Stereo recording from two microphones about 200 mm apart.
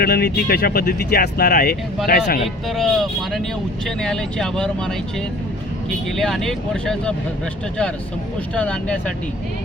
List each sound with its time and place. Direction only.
0.0 s speech: 55° left (ahead or behind)
2.6 s speech: centre (ahead or behind)
6.1 s speech: centre (ahead or behind)
8.5 s speech: 5° left (ahead or behind)